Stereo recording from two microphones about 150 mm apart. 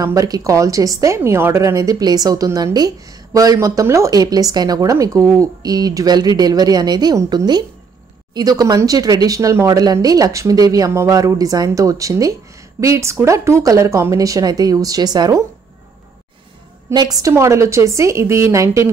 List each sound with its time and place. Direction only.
0.0 s a woman's voice: 20° right (ahead or behind)
16.9 s a woman's voice: 25° right (ahead or behind)